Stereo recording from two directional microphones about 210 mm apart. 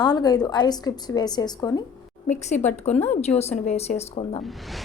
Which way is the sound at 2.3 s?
35° left (ahead or behind).